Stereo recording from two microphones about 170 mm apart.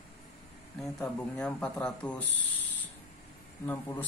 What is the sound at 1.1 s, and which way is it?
Speech, 5° left (ahead or behind).